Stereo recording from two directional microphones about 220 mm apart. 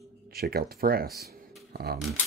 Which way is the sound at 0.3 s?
45° right (ahead or behind).